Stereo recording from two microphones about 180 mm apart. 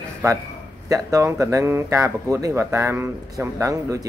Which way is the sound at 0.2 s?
20° right (ahead or behind).